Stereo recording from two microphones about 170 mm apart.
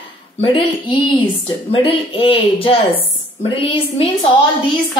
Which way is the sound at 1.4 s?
35° left (ahead or behind).